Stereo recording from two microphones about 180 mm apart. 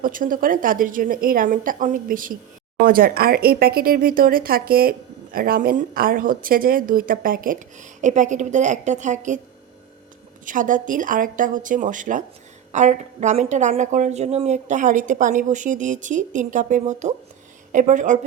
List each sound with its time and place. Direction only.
0.0 s speech: 50° right (ahead or behind)
10.4 s speech: 45° right (ahead or behind)